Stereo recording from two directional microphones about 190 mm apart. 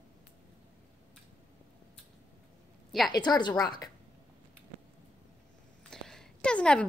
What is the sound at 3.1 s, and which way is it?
Speech, 20° left (ahead or behind).